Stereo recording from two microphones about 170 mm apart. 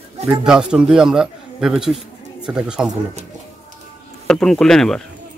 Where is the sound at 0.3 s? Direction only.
5° right (ahead or behind).